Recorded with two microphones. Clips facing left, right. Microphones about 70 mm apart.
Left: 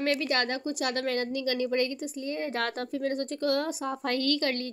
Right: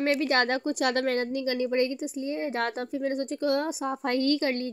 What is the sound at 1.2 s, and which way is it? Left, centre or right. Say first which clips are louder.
A woman's voice: right 1 dB; right.